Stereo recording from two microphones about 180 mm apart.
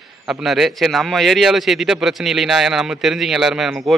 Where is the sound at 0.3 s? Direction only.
Centre (ahead or behind).